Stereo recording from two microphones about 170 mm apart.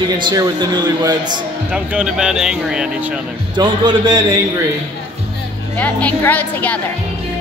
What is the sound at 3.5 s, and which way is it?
Speech, 30° right (ahead or behind).